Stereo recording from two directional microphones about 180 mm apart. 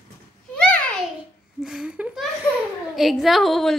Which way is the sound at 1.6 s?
5° right (ahead or behind).